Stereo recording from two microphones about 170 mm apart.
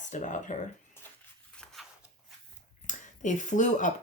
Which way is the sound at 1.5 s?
5° left (ahead or behind).